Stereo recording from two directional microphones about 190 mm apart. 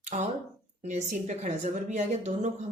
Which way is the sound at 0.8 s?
40° right (ahead or behind).